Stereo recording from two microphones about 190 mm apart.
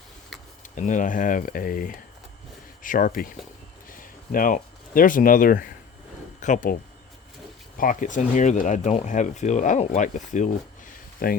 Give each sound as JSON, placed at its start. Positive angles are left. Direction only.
{"t": 0.6, "sound": "speech", "side_deg": 40}
{"t": 7.8, "sound": "speech", "side_deg": 45}